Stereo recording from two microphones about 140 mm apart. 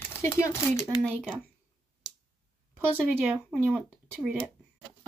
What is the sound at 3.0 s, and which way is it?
Speech, 15° right (ahead or behind).